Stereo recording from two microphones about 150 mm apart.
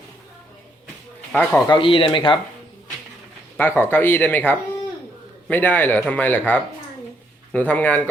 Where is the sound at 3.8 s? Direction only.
15° left (ahead or behind).